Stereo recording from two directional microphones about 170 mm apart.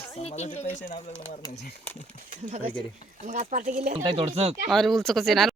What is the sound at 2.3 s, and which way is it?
Speech, 50° right (ahead or behind).